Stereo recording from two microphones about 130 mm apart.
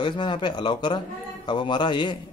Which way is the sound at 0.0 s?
35° left (ahead or behind).